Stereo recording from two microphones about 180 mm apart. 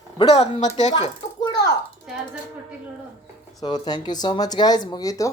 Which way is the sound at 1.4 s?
20° left (ahead or behind).